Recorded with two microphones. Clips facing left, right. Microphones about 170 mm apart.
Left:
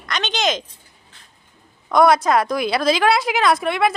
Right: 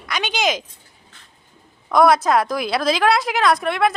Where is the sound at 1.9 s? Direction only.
Centre (ahead or behind).